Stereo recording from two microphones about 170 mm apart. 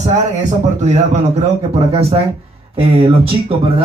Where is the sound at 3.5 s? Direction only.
35° right (ahead or behind).